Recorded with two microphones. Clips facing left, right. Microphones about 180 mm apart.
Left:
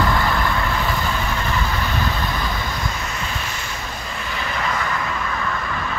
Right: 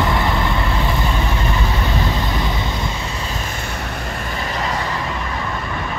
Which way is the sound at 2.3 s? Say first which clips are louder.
Right 3 dB; 25° right (ahead or behind).